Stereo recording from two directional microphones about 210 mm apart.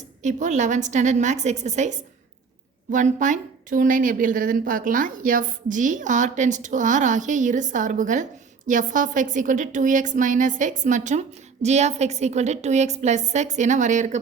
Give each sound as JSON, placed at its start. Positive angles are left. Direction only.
{"t": 0.2, "sound": "a woman's voice", "side_deg": -35}